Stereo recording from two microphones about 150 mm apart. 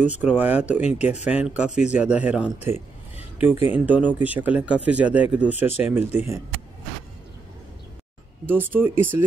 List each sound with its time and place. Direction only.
0.0 s speech: 10° right (ahead or behind)
8.5 s speech: 10° right (ahead or behind)